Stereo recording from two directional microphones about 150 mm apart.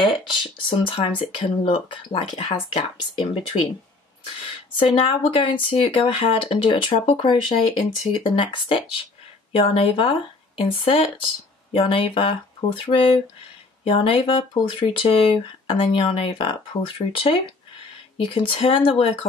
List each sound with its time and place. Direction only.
0.0 s speech: 35° left (ahead or behind)
4.4 s speech: 35° left (ahead or behind)